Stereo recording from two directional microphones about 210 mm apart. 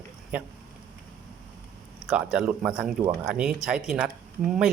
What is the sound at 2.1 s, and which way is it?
A man's voice, 5° right (ahead or behind).